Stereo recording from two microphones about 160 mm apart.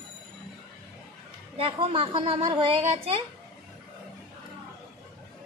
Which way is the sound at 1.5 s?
35° right (ahead or behind).